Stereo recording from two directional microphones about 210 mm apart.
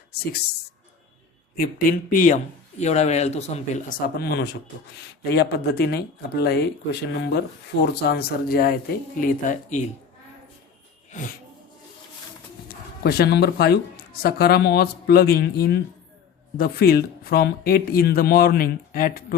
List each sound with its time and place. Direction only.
0.2 s speech: 50° left (ahead or behind)
1.5 s speech: 40° left (ahead or behind)
4.2 s speech: 50° left (ahead or behind)
11.1 s speech: 35° left (ahead or behind)
12.6 s speech: 50° left (ahead or behind)